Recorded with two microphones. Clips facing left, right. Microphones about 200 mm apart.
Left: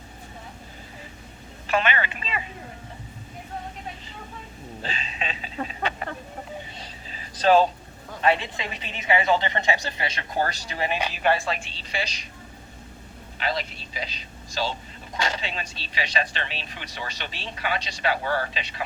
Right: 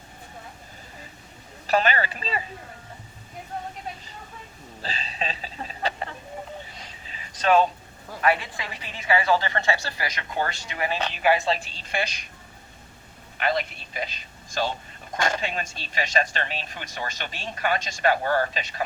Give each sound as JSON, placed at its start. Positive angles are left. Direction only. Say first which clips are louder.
{"t": 1.6, "sound": "speech", "louder": "right 2 dB", "side_deg": -40}
{"t": 4.8, "sound": "speech", "louder": "right 2 dB", "side_deg": -35}
{"t": 6.7, "sound": "a sound", "louder": "left 3 dB", "side_deg": 35}
{"t": 8.2, "sound": "a woman's voice", "louder": "left 1 dB", "side_deg": 25}
{"t": 10.8, "sound": "speech", "louder": "even", "side_deg": 15}
{"t": 11.4, "sound": "speech", "louder": "right 4 dB", "side_deg": -30}
{"t": 11.7, "sound": "speech", "louder": "right 2 dB", "side_deg": -50}
{"t": 13.4, "sound": "a man's voice", "louder": "right 3 dB", "side_deg": -55}